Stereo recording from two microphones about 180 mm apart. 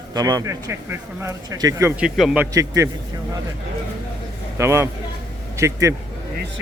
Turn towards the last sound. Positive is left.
turn(degrees=-15)  # may be behind; listen again after turning